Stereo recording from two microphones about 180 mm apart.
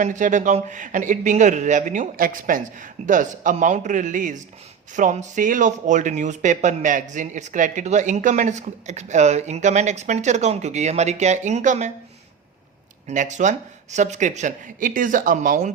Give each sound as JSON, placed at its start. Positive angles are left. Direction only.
{"t": 0.0, "sound": "a man's voice", "side_deg": -45}
{"t": 13.1, "sound": "a man's voice", "side_deg": -40}